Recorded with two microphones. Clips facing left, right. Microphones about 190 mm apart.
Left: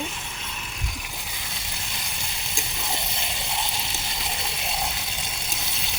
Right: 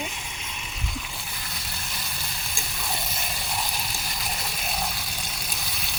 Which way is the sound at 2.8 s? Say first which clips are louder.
Right 1 dB; 20° left (ahead or behind).